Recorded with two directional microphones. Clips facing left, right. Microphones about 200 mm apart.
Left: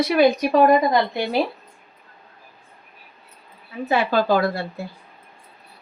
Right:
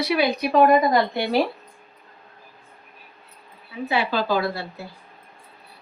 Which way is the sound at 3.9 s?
45° left (ahead or behind).